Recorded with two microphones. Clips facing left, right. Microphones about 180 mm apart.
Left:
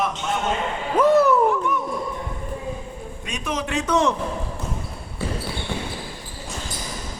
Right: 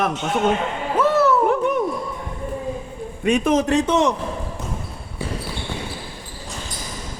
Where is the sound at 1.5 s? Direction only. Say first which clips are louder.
Right 4 dB; 60° right (ahead or behind).